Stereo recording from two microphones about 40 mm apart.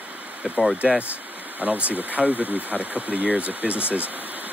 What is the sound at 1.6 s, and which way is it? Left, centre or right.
Speech, right.